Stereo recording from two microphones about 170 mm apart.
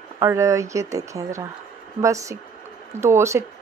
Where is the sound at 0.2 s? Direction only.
15° right (ahead or behind).